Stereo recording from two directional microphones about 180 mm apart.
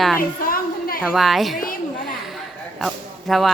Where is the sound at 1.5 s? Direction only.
50° left (ahead or behind).